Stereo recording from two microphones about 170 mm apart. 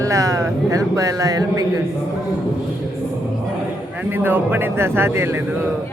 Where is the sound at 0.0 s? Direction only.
20° right (ahead or behind).